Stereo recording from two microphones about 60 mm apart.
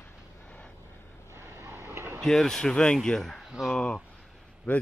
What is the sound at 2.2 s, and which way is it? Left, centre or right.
Speech, centre.